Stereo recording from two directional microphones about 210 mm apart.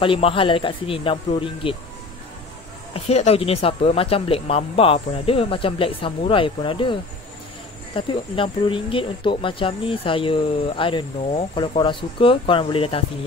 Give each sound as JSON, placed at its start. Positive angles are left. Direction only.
{"t": 0.0, "sound": "speech", "side_deg": 25}
{"t": 2.9, "sound": "speech", "side_deg": 30}